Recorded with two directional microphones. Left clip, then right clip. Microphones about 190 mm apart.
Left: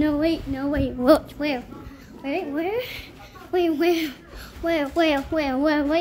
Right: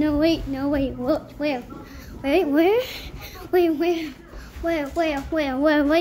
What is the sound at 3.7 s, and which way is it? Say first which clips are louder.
A child's voice: left 2 dB; 30° left (ahead or behind).